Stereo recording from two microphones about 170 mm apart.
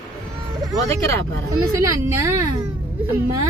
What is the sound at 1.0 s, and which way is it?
Speech, 15° left (ahead or behind).